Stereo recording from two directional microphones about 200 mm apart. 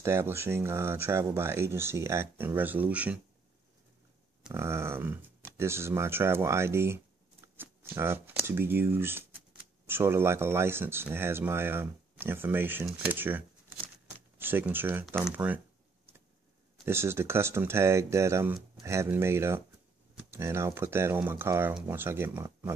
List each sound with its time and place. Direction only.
0.0 s speech: 15° right (ahead or behind)
4.5 s speech: 15° right (ahead or behind)
7.5 s shuffling cards: 10° right (ahead or behind)
8.0 s speech: 10° right (ahead or behind)
16.8 s speech: 10° right (ahead or behind)